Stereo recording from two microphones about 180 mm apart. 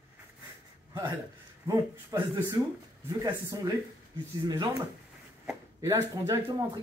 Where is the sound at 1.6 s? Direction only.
15° right (ahead or behind).